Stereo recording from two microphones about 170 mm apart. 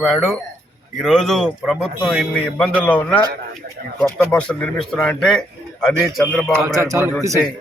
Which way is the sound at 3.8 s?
60° right (ahead or behind).